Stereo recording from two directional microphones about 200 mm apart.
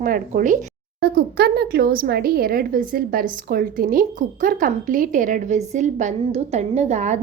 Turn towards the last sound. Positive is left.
turn(degrees=-35)  # may be behind; listen again after turning